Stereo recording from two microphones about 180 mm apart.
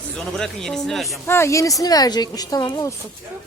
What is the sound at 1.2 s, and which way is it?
Speech, 15° left (ahead or behind).